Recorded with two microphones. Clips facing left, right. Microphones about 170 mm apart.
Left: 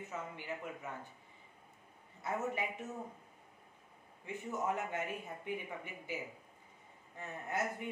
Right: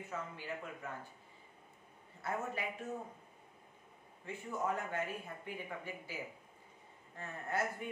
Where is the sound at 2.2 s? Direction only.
20° left (ahead or behind).